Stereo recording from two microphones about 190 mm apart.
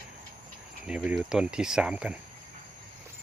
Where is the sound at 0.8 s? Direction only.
5° right (ahead or behind).